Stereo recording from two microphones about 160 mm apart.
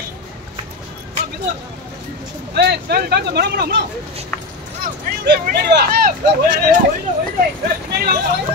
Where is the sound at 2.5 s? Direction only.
90° right.